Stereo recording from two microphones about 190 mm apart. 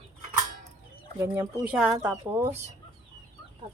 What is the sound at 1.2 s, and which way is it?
Speech, 10° right (ahead or behind).